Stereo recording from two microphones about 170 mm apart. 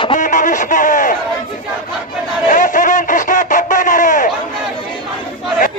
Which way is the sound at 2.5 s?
50° left (ahead or behind).